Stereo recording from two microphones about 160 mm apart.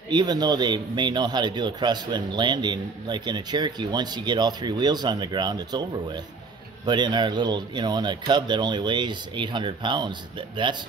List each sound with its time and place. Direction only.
0.1 s a man's voice: 25° right (ahead or behind)
6.9 s a man's voice: 30° right (ahead or behind)